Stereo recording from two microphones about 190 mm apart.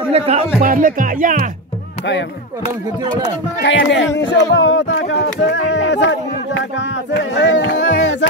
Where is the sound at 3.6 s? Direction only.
70° left (ahead or behind).